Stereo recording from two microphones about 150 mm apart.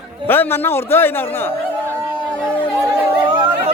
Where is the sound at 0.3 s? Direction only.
15° left (ahead or behind).